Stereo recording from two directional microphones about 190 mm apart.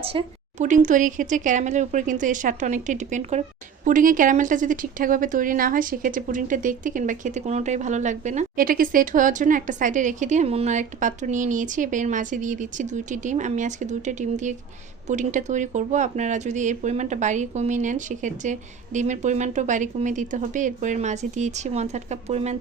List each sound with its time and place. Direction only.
0.0 s a woman's voice: 30° right (ahead or behind)